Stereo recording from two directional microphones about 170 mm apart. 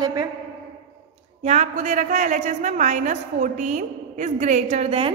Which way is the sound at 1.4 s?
45° right (ahead or behind).